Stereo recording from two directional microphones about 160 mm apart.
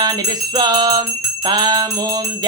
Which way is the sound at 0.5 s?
25° right (ahead or behind).